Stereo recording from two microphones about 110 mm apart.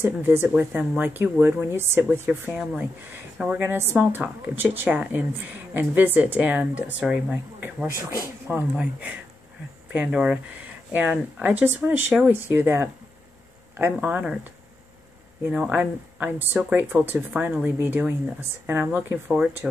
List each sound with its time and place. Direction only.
0.0 s speech: 20° right (ahead or behind)
15.5 s speech: 10° right (ahead or behind)